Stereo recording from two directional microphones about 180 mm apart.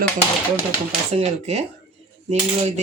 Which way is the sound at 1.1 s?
35° right (ahead or behind).